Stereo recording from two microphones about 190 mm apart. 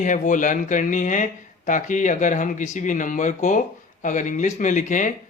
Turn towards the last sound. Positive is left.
turn(degrees=40)  # may be behind; listen again after turning